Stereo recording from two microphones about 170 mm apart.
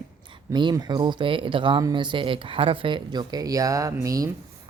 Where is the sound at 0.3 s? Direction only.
25° right (ahead or behind).